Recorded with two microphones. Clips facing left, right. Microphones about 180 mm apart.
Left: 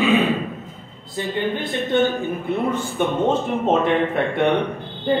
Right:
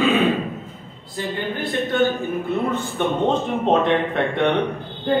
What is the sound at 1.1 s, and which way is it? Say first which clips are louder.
A man's voice: left 3 dB; 20° left (ahead or behind).